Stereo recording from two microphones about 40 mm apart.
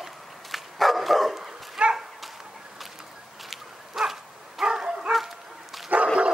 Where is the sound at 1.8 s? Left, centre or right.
Right.